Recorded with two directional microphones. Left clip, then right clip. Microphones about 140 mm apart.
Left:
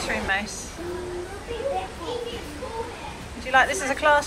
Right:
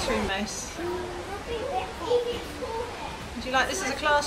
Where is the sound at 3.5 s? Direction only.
20° right (ahead or behind).